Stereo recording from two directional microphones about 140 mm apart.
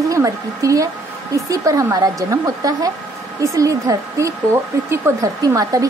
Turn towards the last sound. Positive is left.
turn(degrees=-25)  # may be behind; listen again after turning